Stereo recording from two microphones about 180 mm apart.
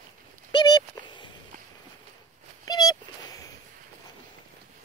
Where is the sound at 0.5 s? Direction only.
25° left (ahead or behind).